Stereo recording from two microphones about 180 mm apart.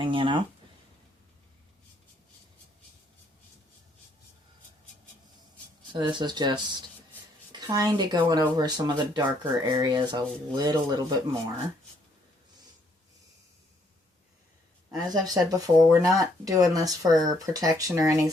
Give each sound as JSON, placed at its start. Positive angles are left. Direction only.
{"t": 0.0, "sound": "speech", "side_deg": -30}
{"t": 5.9, "sound": "speech", "side_deg": -25}
{"t": 14.8, "sound": "speech", "side_deg": -20}